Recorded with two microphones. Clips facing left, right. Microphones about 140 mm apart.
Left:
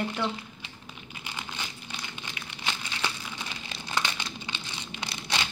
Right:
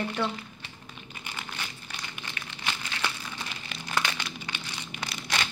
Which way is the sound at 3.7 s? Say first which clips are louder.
Right 1 dB; 20° left (ahead or behind).